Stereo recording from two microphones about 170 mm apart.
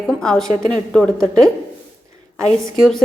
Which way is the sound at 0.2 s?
5° left (ahead or behind).